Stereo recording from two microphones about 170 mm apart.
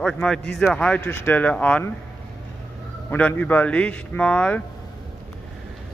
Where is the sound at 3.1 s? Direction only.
10° left (ahead or behind).